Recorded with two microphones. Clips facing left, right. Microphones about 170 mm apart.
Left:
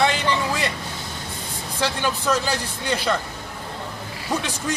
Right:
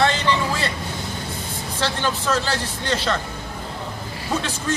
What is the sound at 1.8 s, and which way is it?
A man's voice, 10° left (ahead or behind).